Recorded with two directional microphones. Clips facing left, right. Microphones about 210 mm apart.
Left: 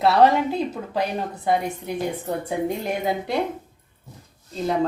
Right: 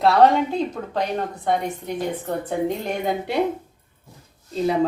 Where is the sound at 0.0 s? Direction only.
5° left (ahead or behind).